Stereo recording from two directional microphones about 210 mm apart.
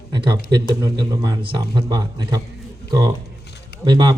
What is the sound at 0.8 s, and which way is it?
A man's voice, 20° right (ahead or behind).